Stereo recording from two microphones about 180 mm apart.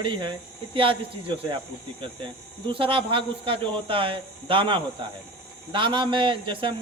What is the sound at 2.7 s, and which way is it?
Speech, 30° right (ahead or behind).